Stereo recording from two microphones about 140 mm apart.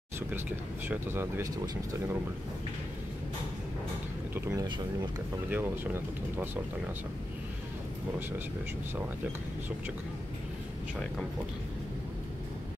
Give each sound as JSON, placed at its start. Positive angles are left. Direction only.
{"t": 0.3, "sound": "speech", "side_deg": -15}
{"t": 4.5, "sound": "speech", "side_deg": -30}
{"t": 5.5, "sound": "speech", "side_deg": -15}